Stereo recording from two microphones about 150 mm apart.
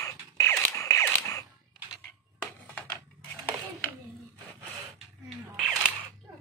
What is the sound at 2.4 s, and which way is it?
Music, 10° left (ahead or behind).